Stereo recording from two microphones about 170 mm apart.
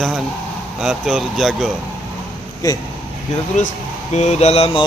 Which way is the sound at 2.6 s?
20° left (ahead or behind).